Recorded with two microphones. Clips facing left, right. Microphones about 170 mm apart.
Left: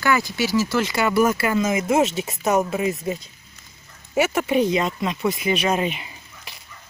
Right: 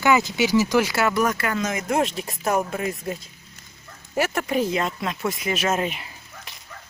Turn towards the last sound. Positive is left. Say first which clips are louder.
# even
turn(degrees=0)  # may be behind; listen again after turning